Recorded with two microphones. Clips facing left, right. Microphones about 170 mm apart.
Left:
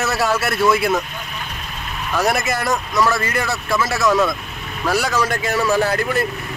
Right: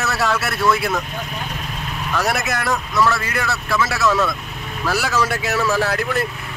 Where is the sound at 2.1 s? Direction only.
Centre (ahead or behind).